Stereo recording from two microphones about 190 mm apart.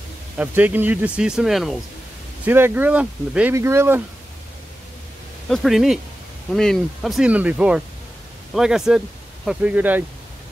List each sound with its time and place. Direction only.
0.4 s speech: 10° right (ahead or behind)
5.5 s speech: centre (ahead or behind)